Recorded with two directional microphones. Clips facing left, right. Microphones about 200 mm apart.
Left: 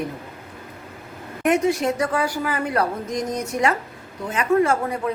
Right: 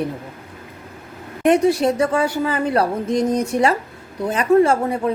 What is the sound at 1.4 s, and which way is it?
A woman's voice, 35° right (ahead or behind).